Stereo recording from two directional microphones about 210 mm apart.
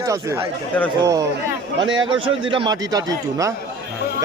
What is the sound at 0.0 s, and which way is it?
Speech, 15° right (ahead or behind).